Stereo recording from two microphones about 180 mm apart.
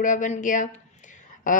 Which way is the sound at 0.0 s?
45° left (ahead or behind).